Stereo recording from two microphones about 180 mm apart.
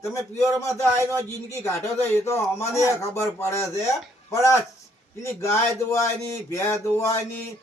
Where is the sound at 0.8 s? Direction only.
15° right (ahead or behind).